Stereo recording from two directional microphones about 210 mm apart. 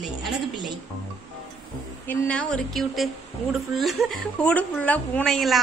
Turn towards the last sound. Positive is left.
turn(degrees=0)  # may be behind; listen again after turning